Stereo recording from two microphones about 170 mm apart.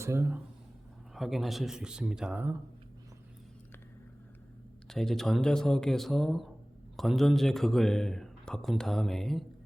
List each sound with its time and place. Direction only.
0.0 s speech: 15° right (ahead or behind)
1.1 s a man's voice: centre (ahead or behind)
4.9 s a man's voice: centre (ahead or behind)